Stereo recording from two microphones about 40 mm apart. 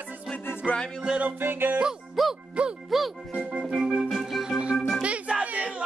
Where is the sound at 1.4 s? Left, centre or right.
Right.